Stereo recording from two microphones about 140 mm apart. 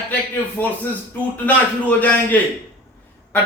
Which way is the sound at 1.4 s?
10° left (ahead or behind).